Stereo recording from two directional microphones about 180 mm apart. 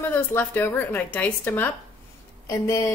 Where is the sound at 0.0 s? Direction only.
10° left (ahead or behind).